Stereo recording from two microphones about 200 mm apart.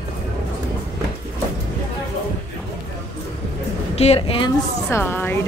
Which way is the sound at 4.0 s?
30° left (ahead or behind).